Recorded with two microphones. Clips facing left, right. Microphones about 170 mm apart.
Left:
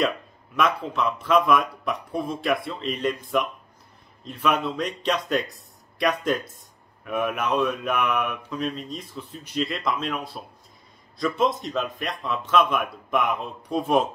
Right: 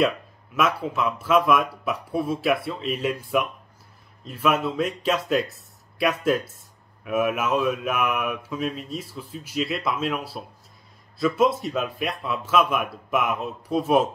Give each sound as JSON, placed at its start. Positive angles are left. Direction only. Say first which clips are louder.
{"t": 0.6, "sound": "speech", "louder": "even", "side_deg": -5}